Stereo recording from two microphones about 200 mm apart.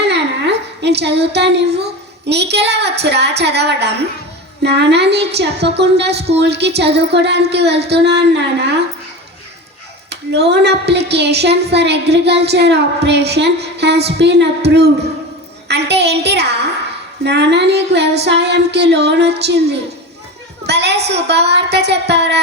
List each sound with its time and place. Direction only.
0.0 s a sound: 60° right (ahead or behind)
2.2 s a woman's voice: 60° right (ahead or behind)
10.1 s a woman's voice: 55° right (ahead or behind)
20.7 s a woman's voice: 60° right (ahead or behind)